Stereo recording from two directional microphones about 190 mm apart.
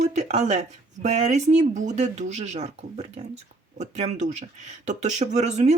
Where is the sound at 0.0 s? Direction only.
35° right (ahead or behind).